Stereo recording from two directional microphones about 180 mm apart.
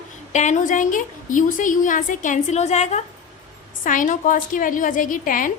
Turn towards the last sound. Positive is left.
turn(degrees=50)  # may be behind; listen again after turning